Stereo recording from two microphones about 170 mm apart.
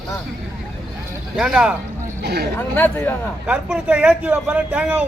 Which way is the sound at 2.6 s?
10° left (ahead or behind).